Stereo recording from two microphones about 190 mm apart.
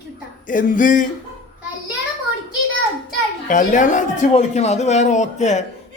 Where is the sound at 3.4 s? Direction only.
40° left (ahead or behind).